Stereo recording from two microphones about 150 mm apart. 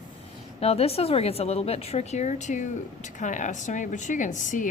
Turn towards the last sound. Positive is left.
turn(degrees=55)  # may be behind; listen again after turning